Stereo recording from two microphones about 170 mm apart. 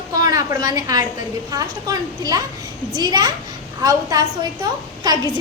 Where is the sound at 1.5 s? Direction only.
20° right (ahead or behind).